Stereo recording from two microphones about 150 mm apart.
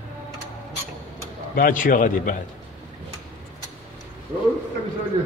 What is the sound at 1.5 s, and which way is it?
Speech, 65° left (ahead or behind).